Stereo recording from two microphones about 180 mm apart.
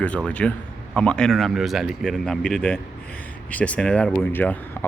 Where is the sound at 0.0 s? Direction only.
5° left (ahead or behind).